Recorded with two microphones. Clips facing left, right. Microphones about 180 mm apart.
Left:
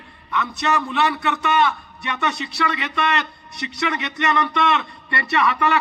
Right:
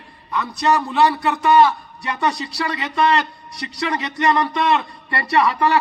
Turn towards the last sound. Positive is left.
turn(degrees=-30)  # may be behind; listen again after turning